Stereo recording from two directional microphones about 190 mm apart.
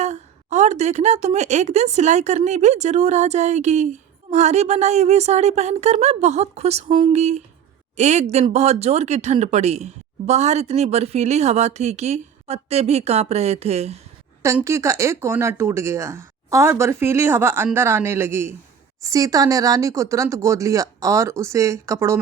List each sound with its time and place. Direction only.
0.0 s speech: 35° right (ahead or behind)
14.4 s speech: 15° right (ahead or behind)